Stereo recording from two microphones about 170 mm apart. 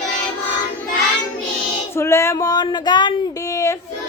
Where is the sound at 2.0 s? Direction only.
15° left (ahead or behind).